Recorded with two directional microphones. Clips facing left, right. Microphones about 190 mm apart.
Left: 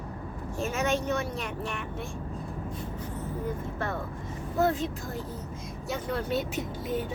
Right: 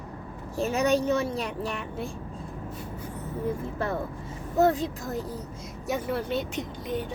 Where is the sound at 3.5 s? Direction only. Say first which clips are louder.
Right 6 dB; 35° right (ahead or behind).